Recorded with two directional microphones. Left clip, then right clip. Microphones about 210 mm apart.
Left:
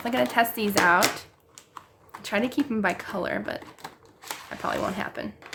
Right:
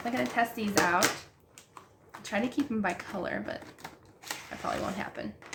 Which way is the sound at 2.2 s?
45° left (ahead or behind).